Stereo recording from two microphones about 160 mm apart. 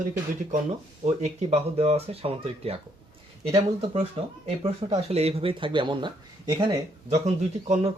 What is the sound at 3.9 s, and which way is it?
Speech, 40° right (ahead or behind).